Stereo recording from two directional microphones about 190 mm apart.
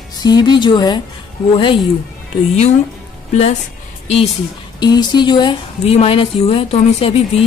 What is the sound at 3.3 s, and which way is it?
Speech, 35° left (ahead or behind).